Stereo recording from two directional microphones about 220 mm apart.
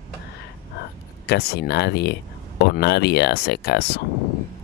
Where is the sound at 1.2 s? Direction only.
45° left (ahead or behind).